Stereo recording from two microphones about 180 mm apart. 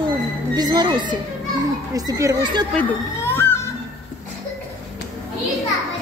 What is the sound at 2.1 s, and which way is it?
Speech, 20° right (ahead or behind).